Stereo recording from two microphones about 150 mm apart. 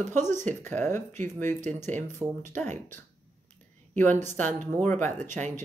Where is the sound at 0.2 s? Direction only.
55° right (ahead or behind).